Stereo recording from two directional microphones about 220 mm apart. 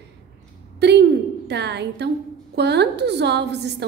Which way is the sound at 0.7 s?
50° right (ahead or behind).